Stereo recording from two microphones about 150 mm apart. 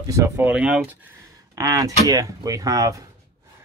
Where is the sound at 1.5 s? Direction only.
25° right (ahead or behind).